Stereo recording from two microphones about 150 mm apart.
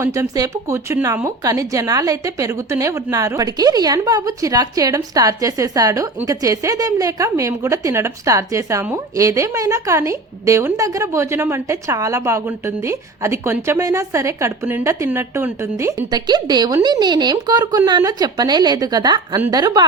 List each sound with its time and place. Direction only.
0.0 s a woman's voice: 20° right (ahead or behind)